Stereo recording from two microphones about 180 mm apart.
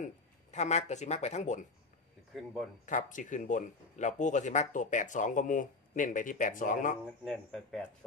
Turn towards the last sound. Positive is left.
turn(degrees=0)  # may be behind; listen again after turning